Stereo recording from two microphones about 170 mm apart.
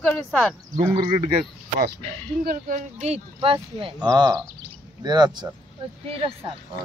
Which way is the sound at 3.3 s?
30° right (ahead or behind).